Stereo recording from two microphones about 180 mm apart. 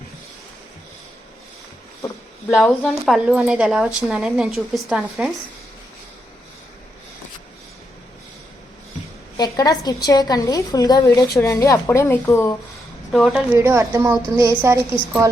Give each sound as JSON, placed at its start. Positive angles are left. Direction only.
{"t": 2.0, "sound": "a sound", "side_deg": 15}
{"t": 2.5, "sound": "a woman's voice", "side_deg": 0}
{"t": 9.4, "sound": "a woman's voice", "side_deg": 20}
{"t": 13.1, "sound": "a woman's voice", "side_deg": 0}
{"t": 13.6, "sound": "a woman's voice", "side_deg": -15}